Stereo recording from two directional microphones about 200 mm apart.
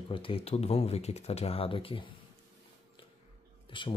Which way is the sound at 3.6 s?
25° left (ahead or behind).